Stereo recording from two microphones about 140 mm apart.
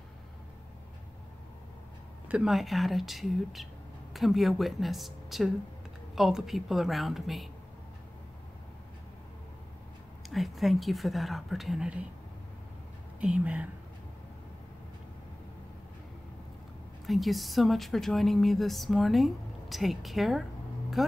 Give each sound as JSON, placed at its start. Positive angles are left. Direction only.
{"t": 2.2, "sound": "speech", "side_deg": -5}
{"t": 10.3, "sound": "speech", "side_deg": 0}
{"t": 13.2, "sound": "speech", "side_deg": -10}
{"t": 17.0, "sound": "speech", "side_deg": 0}